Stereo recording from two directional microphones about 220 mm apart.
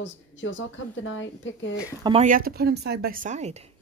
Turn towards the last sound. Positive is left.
turn(degrees=-30)  # may be behind; listen again after turning